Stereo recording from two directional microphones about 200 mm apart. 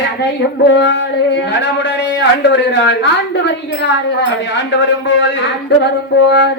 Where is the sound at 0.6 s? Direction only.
60° left (ahead or behind).